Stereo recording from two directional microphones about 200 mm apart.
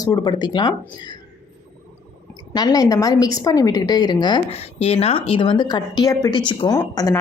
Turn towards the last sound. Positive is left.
turn(degrees=20)  # may be behind; listen again after turning